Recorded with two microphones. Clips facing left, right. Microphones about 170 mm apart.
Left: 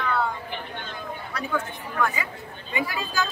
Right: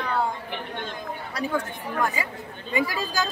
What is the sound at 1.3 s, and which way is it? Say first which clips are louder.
Speech: right 2 dB; 35° right (ahead or behind).